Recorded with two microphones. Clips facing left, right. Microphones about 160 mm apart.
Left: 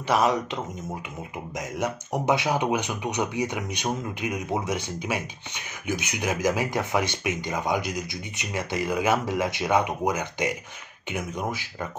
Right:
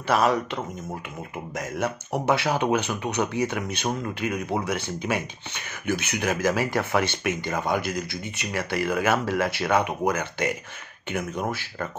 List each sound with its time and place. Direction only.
0.1 s speech: 20° left (ahead or behind)
1.6 s speech: 15° left (ahead or behind)